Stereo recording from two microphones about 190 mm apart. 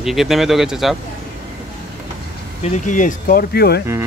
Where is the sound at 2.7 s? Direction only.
40° left (ahead or behind).